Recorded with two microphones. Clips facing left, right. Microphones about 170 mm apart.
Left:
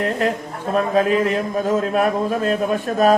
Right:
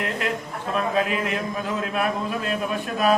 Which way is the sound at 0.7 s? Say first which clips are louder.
Left 6 dB; 40° left (ahead or behind).